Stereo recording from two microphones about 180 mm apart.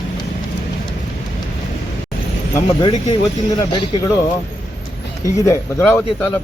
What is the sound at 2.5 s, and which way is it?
Speech, 20° left (ahead or behind).